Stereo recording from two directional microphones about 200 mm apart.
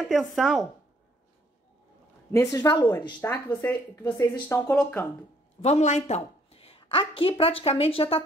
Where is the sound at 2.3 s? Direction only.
15° left (ahead or behind).